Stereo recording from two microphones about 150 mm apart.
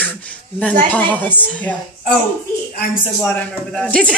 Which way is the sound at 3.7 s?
5° left (ahead or behind).